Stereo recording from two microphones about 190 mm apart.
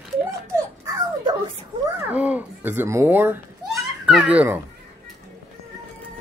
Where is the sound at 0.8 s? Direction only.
20° right (ahead or behind).